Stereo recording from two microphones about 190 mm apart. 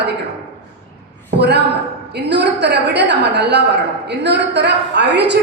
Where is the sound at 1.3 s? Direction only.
60° right (ahead or behind).